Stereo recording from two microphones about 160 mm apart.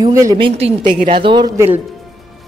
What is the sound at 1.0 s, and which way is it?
Speech, 30° right (ahead or behind).